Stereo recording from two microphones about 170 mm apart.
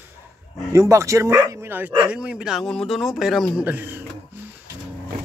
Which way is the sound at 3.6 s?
10° right (ahead or behind).